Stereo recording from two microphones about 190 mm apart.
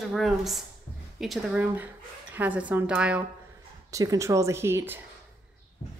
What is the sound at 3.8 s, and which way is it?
A woman's voice, 15° right (ahead or behind).